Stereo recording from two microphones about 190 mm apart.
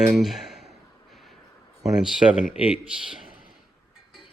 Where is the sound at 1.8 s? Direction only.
5° right (ahead or behind).